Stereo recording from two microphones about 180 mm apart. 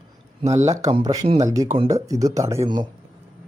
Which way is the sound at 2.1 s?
20° right (ahead or behind).